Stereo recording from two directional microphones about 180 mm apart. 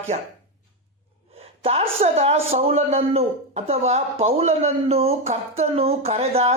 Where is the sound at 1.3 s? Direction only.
35° right (ahead or behind).